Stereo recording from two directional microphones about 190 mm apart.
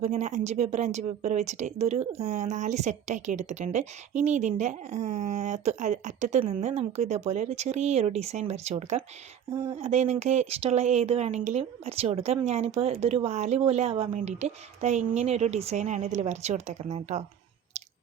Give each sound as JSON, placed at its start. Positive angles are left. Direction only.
{"t": 0.0, "sound": "speech", "side_deg": -35}